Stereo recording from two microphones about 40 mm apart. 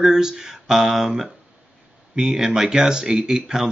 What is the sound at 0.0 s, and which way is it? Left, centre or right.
Speech, centre.